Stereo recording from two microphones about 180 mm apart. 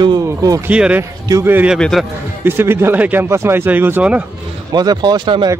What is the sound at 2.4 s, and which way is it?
Speech, 10° right (ahead or behind).